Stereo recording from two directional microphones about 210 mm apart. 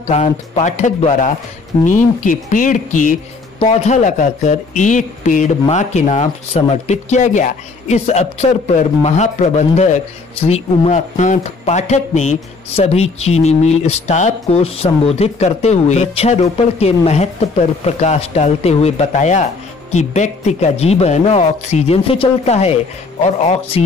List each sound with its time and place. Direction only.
0.1 s speech: 30° left (ahead or behind)